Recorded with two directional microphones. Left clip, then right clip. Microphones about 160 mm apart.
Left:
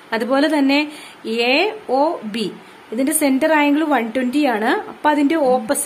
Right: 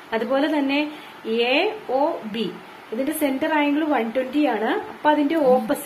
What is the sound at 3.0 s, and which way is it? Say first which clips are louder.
A woman's voice: left 6 dB; 35° left (ahead or behind).